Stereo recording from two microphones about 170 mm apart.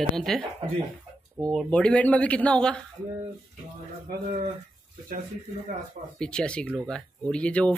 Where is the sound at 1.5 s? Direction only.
5° left (ahead or behind).